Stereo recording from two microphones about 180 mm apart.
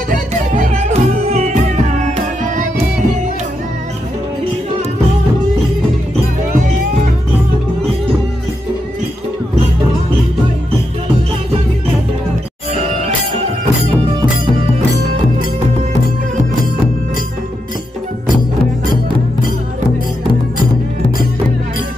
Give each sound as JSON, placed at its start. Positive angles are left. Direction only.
{"t": 0.1, "sound": "music", "side_deg": -40}
{"t": 12.7, "sound": "music", "side_deg": -35}